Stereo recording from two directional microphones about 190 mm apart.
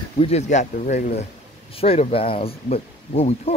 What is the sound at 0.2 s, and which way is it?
Speech, 35° left (ahead or behind).